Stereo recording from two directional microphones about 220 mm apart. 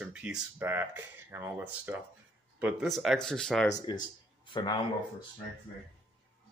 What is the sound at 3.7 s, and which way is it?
Speech, 20° left (ahead or behind).